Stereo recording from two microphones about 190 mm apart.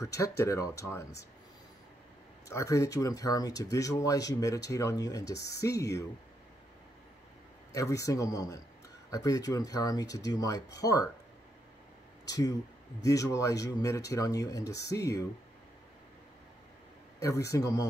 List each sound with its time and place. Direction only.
0.0 s speech: 15° left (ahead or behind)
2.4 s speech: 15° left (ahead or behind)
7.7 s speech: 15° left (ahead or behind)
12.3 s speech: 20° left (ahead or behind)
17.2 s speech: 15° left (ahead or behind)